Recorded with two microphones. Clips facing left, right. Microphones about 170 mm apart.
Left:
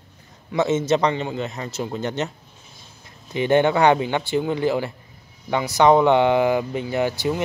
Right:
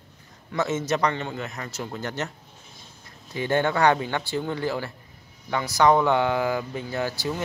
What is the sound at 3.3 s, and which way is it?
Speech, 20° left (ahead or behind).